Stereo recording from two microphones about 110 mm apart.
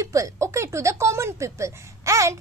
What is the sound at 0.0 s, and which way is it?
Speech, 30° right (ahead or behind).